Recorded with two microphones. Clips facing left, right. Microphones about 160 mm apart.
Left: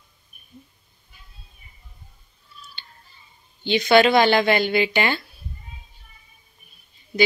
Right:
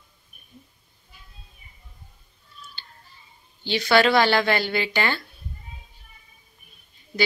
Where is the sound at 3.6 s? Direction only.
20° left (ahead or behind).